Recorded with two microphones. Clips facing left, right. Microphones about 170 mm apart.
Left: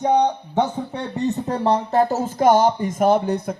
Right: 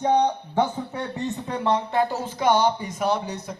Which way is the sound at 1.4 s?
40° left (ahead or behind).